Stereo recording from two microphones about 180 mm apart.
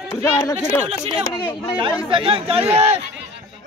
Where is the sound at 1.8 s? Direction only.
30° right (ahead or behind).